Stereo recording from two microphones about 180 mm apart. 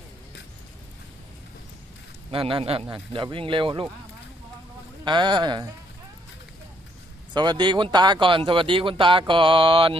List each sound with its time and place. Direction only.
2.3 s speech: 30° right (ahead or behind)
5.0 s speech: 25° right (ahead or behind)
7.3 s speech: 25° right (ahead or behind)